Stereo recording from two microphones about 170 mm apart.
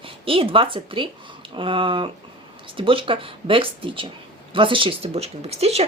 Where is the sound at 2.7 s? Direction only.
30° right (ahead or behind).